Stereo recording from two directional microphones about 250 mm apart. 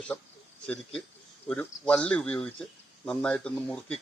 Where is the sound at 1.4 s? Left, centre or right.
Centre.